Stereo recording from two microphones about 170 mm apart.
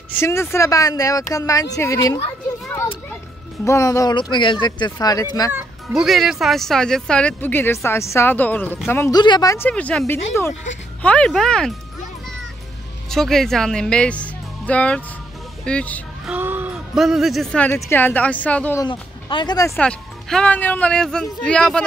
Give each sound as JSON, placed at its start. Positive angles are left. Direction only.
{"t": 0.2, "sound": "speech", "side_deg": 15}
{"t": 3.6, "sound": "speech", "side_deg": 15}
{"t": 5.5, "sound": "a woman's voice", "side_deg": -10}
{"t": 9.1, "sound": "speech", "side_deg": 25}
{"t": 9.7, "sound": "a woman's voice", "side_deg": 10}
{"t": 13.1, "sound": "a woman's voice", "side_deg": 0}
{"t": 16.3, "sound": "a woman's voice", "side_deg": -10}
{"t": 18.8, "sound": "speech", "side_deg": 30}
{"t": 19.8, "sound": "speech", "side_deg": 5}